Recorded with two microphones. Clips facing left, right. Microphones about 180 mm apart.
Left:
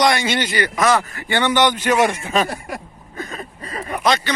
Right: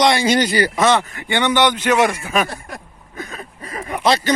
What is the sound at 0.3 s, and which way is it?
A man's voice, 40° right (ahead or behind).